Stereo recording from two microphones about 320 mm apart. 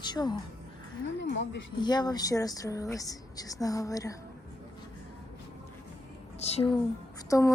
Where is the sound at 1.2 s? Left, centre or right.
Left.